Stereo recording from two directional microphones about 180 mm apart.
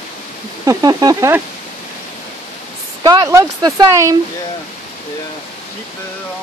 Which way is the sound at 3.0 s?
20° right (ahead or behind).